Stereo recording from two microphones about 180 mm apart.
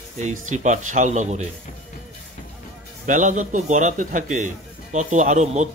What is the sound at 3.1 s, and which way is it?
A man's voice, 45° right (ahead or behind).